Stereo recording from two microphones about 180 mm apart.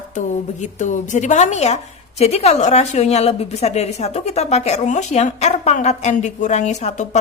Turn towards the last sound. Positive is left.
turn(degrees=40)  # may be behind; listen again after turning